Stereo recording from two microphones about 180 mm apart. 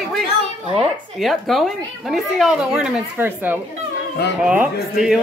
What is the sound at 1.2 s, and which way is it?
A woman's voice, centre (ahead or behind).